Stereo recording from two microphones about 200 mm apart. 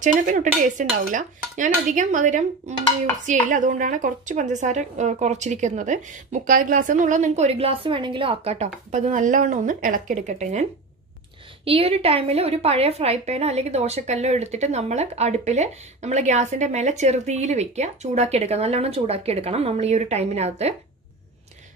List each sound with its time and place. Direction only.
0.0 s a woman's voice: 40° right (ahead or behind)